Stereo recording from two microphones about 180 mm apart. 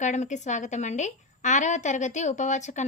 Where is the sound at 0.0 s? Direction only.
40° left (ahead or behind).